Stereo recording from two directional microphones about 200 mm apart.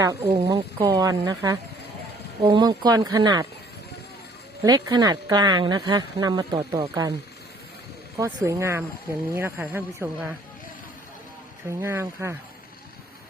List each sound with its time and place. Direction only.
0.2 s speech: 30° right (ahead or behind)
0.4 s speech: 15° right (ahead or behind)
4.6 s speech: 20° right (ahead or behind)
8.2 s speech: 15° right (ahead or behind)
11.8 s speech: 15° right (ahead or behind)